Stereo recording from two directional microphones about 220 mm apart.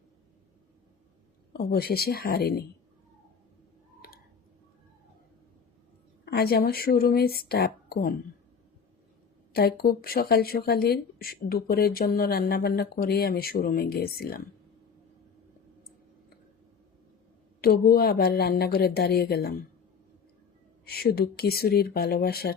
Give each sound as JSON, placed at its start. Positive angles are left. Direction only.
{"t": 1.5, "sound": "a woman's voice", "side_deg": 45}
{"t": 4.0, "sound": "clicking", "side_deg": 40}
{"t": 6.2, "sound": "a woman's voice", "side_deg": 45}
{"t": 9.5, "sound": "a woman's voice", "side_deg": 45}
{"t": 17.6, "sound": "a woman's voice", "side_deg": 45}
{"t": 20.8, "sound": "a woman's voice", "side_deg": 45}